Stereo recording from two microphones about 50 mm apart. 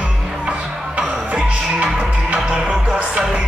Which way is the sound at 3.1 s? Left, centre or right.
Centre.